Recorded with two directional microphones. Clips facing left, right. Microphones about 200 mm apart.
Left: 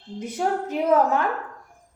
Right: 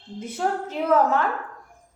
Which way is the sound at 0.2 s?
15° left (ahead or behind).